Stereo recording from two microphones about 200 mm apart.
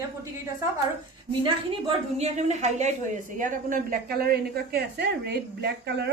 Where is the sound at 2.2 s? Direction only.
35° right (ahead or behind).